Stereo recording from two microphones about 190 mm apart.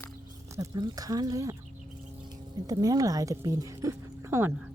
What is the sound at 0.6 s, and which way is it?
Speech, 20° right (ahead or behind).